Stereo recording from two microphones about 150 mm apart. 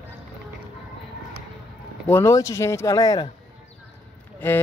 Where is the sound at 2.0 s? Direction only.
15° left (ahead or behind).